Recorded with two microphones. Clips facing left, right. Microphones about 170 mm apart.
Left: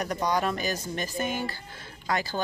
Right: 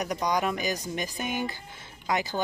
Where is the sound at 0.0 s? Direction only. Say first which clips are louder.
Even; 15° right (ahead or behind).